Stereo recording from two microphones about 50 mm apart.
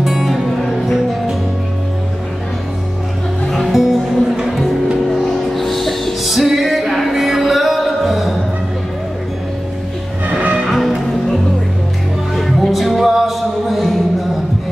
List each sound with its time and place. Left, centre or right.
0.0 s music: centre
3.4 s music: centre
10.2 s music: right
10.6 s music: centre
12.4 s music: centre